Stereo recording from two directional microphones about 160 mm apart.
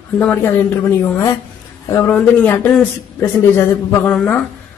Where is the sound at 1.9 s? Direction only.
15° left (ahead or behind).